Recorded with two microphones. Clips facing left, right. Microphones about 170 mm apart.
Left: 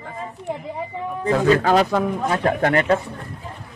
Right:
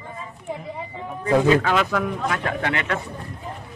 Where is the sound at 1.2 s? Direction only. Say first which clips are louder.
Even; 40° left (ahead or behind).